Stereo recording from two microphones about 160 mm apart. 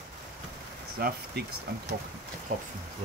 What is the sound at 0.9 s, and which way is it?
Speech, 70° right (ahead or behind).